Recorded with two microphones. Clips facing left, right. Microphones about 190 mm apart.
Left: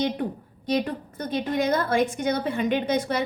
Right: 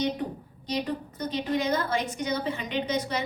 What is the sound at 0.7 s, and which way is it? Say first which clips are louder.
A woman's voice: left 4 dB; 55° left (ahead or behind).